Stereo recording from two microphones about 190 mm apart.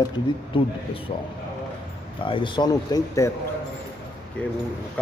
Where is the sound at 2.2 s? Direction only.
25° left (ahead or behind).